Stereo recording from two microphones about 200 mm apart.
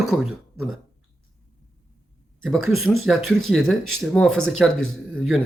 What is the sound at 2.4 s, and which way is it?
Speech, centre (ahead or behind).